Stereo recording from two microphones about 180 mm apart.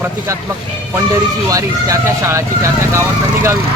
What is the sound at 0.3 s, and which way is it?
Speech, 15° right (ahead or behind).